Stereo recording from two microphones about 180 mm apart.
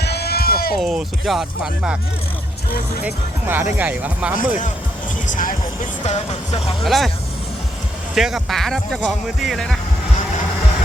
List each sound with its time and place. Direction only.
0.0 s music: 65° left (ahead or behind)
0.8 s speech: centre (ahead or behind)
2.6 s speech: 55° left (ahead or behind)
3.0 s speech: 10° right (ahead or behind)
5.3 s speech: 45° left (ahead or behind)
6.1 s music: 35° left (ahead or behind)
6.8 s speech: centre (ahead or behind)
8.1 s speech: centre (ahead or behind)